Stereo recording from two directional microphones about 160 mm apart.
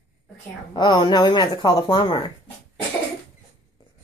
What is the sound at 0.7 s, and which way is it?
Speech, 25° left (ahead or behind).